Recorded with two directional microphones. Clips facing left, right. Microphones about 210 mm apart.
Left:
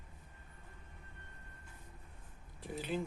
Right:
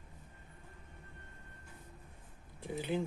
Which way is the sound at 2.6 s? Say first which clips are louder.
Right 3 dB; 20° right (ahead or behind).